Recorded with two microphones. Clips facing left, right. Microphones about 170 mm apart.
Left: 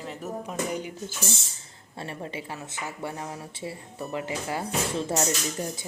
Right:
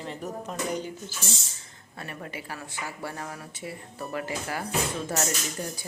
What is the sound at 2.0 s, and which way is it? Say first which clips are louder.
Speech: left 3 dB; 25° left (ahead or behind).